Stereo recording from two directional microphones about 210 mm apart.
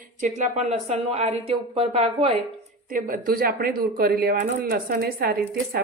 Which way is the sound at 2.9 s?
45° right (ahead or behind).